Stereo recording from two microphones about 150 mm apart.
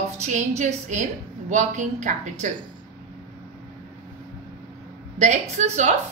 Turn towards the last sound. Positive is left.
turn(degrees=-50)  # may be behind; listen again after turning